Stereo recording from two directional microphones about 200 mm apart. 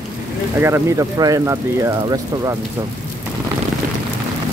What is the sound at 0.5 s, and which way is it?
Speech, 10° right (ahead or behind).